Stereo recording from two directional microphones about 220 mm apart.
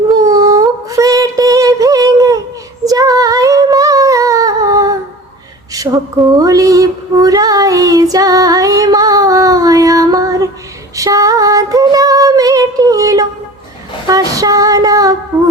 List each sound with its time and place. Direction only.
0.1 s a sound: 15° right (ahead or behind)
2.8 s humming: 15° right (ahead or behind)
5.7 s female singing: 15° right (ahead or behind)